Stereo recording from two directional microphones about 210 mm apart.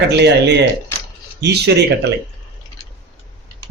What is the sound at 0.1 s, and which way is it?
Speech, 55° right (ahead or behind).